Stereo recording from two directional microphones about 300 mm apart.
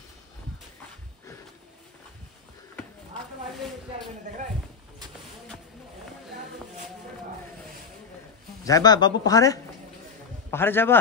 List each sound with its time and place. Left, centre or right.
8.6 s speech: centre